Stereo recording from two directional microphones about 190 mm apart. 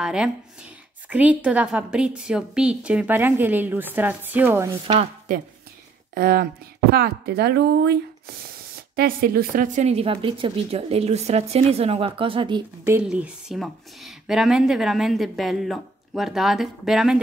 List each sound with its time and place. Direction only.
0.0 s a woman's voice: 5° right (ahead or behind)
6.1 s speech: 55° right (ahead or behind); by 12.6 s 25° right (ahead or behind)
12.8 s a woman's voice: 10° right (ahead or behind)